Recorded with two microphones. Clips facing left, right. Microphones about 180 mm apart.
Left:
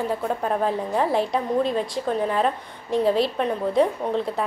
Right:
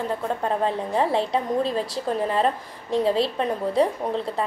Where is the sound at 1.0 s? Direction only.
30° right (ahead or behind).